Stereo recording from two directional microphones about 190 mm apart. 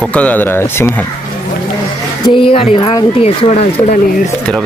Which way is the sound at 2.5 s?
25° left (ahead or behind).